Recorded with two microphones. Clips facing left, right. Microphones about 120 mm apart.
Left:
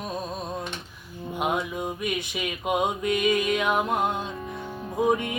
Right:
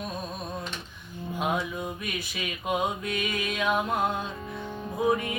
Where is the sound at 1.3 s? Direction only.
20° left (ahead or behind).